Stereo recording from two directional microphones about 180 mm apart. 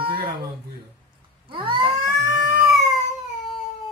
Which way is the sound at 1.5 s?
30° right (ahead or behind).